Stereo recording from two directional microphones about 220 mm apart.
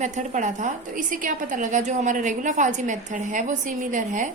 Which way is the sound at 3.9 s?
35° right (ahead or behind).